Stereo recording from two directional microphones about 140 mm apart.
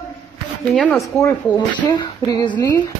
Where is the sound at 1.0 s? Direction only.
20° left (ahead or behind).